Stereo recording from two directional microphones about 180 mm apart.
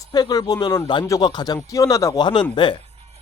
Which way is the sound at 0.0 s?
20° left (ahead or behind).